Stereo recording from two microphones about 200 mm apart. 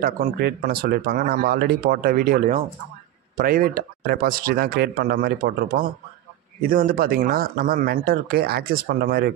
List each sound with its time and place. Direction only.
0.0 s speech: 45° right (ahead or behind)